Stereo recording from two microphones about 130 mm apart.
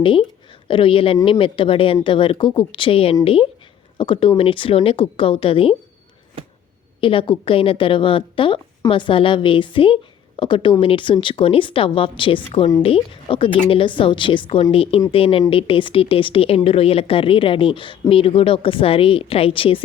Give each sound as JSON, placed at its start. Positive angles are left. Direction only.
{"t": 0.0, "sound": "a woman's voice", "side_deg": 40}
{"t": 7.0, "sound": "a woman's voice", "side_deg": 40}